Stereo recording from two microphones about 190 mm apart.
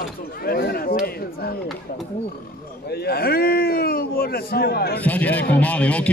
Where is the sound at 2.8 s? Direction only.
55° left (ahead or behind).